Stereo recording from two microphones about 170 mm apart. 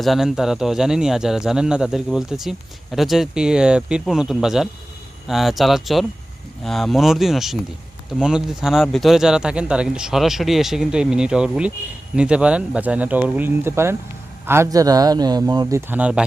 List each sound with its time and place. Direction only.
0.0 s speech: centre (ahead or behind)